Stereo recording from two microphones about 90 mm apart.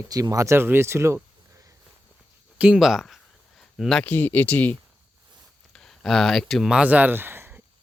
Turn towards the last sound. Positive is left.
turn(degrees=-25)  # may be behind; listen again after turning